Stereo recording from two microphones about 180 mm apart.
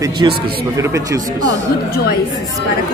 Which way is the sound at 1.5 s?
65° left (ahead or behind).